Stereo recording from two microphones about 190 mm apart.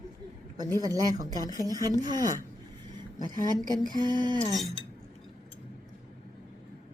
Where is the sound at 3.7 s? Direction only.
20° right (ahead or behind).